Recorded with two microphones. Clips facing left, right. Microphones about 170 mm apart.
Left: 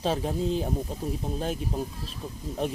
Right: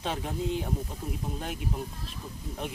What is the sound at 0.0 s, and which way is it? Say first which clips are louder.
Speech: left 5 dB; 35° left (ahead or behind).